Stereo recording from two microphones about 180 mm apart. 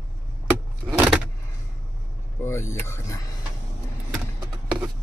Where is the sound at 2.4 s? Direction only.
15° left (ahead or behind).